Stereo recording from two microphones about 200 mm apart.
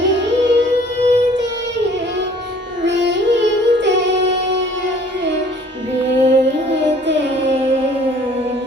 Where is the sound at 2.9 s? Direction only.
60° right (ahead or behind).